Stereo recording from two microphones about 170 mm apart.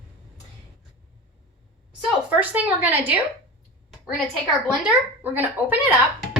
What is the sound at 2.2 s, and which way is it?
Speech, 10° right (ahead or behind).